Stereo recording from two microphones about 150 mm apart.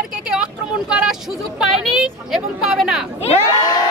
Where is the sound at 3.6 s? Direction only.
25° left (ahead or behind).